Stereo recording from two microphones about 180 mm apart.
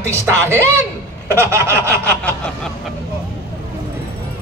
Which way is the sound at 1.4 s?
15° right (ahead or behind).